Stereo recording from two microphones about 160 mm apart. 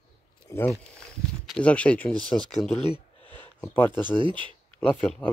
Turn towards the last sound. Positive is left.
turn(degrees=5)  # may be behind; listen again after turning